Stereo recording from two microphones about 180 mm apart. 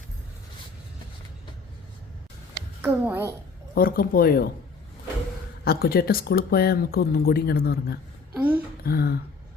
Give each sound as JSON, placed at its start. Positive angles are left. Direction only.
{"t": 2.8, "sound": "a child's voice", "side_deg": -15}
{"t": 3.8, "sound": "speech", "side_deg": 55}
{"t": 5.6, "sound": "speech", "side_deg": 60}
{"t": 8.3, "sound": "a sound", "side_deg": -10}
{"t": 8.8, "sound": "speech", "side_deg": 55}